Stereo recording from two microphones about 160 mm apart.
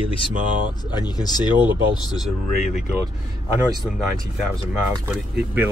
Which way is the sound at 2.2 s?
Centre (ahead or behind).